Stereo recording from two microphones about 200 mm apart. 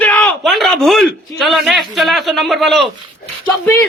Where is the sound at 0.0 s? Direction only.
5° left (ahead or behind).